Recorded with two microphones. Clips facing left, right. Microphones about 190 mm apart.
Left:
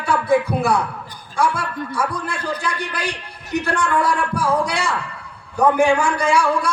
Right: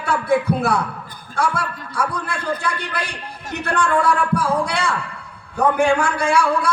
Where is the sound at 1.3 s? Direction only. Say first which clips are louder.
Left 1 dB; 60° right (ahead or behind).